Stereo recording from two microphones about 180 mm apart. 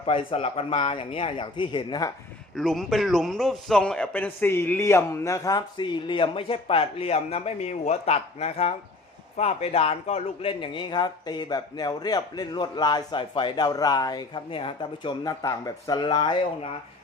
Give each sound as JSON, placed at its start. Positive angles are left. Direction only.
{"t": 0.0, "sound": "speech", "side_deg": 30}
{"t": 2.6, "sound": "a man's voice", "side_deg": 0}